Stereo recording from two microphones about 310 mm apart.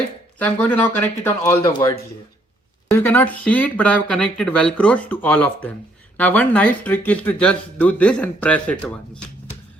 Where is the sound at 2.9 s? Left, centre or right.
Centre.